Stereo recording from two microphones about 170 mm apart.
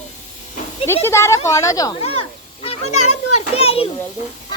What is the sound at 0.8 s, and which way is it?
A child's voice, 15° left (ahead or behind).